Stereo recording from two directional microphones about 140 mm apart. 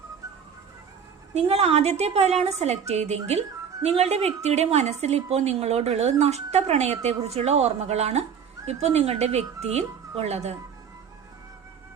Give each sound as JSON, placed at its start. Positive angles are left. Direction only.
{"t": 1.3, "sound": "a woman's voice", "side_deg": -50}